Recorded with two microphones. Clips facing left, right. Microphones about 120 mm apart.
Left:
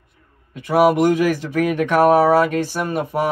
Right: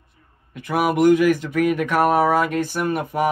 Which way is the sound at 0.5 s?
30° left (ahead or behind).